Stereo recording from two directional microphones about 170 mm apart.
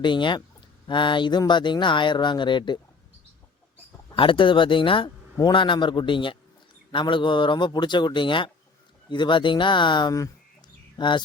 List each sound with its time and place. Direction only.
0.0 s a man's voice: 30° left (ahead or behind)
4.1 s a man's voice: 30° left (ahead or behind)